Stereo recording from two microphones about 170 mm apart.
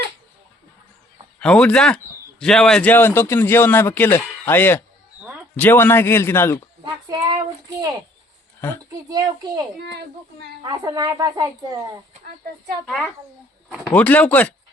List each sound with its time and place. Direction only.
1.4 s a man's voice: 5° left (ahead or behind)
7.1 s speech: 20° right (ahead or behind)
12.8 s speech: centre (ahead or behind)
13.9 s a man's voice: 10° left (ahead or behind)